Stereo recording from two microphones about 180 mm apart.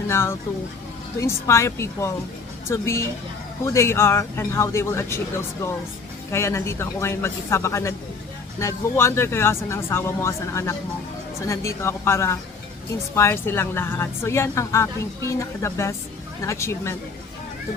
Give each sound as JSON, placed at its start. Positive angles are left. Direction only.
{"t": 0.1, "sound": "a woman's voice", "side_deg": 15}